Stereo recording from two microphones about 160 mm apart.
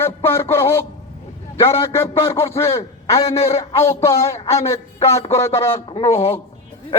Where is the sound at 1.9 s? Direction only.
15° left (ahead or behind).